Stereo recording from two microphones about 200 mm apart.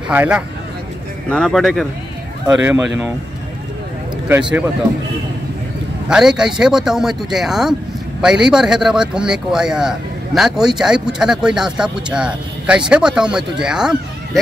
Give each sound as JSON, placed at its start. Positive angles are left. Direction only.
{"t": 0.1, "sound": "a man's voice", "side_deg": -10}
{"t": 4.3, "sound": "a man's voice", "side_deg": -5}
{"t": 6.0, "sound": "a man's voice", "side_deg": -5}